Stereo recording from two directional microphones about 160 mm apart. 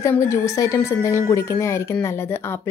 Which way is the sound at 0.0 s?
15° left (ahead or behind).